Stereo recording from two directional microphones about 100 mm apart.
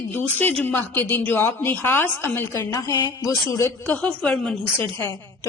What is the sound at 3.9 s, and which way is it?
Speech, 10° left (ahead or behind).